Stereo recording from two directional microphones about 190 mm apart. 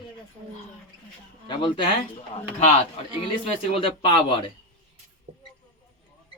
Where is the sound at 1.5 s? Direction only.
25° left (ahead or behind).